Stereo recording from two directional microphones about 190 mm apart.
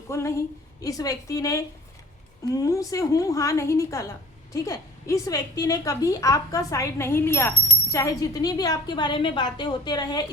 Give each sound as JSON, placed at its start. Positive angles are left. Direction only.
{"t": 0.1, "sound": "a woman's voice", "side_deg": 15}